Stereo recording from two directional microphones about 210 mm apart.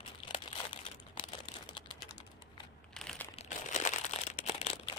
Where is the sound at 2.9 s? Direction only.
5° left (ahead or behind).